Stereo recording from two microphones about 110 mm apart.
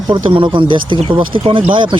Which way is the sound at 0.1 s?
50° right (ahead or behind).